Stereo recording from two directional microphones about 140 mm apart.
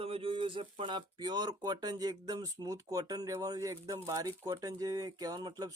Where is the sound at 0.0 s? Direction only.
40° right (ahead or behind).